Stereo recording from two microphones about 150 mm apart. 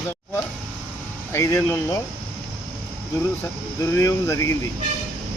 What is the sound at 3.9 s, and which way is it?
Speech, 20° left (ahead or behind).